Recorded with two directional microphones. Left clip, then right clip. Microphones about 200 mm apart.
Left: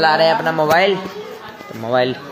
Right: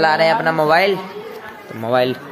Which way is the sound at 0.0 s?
5° right (ahead or behind).